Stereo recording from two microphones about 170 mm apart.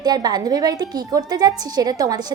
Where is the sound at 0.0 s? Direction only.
25° right (ahead or behind).